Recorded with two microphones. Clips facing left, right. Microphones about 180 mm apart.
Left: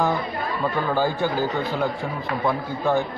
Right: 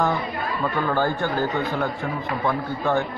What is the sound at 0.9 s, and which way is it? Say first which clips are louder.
A man's voice: left 1 dB; 10° left (ahead or behind).